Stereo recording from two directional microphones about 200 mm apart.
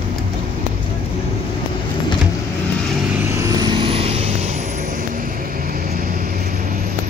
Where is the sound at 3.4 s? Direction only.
20° right (ahead or behind).